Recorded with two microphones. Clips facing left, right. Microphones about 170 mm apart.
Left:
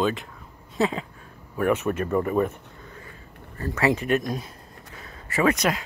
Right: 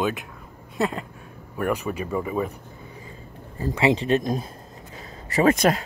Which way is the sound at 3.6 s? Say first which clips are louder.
Right 2 dB; 20° right (ahead or behind).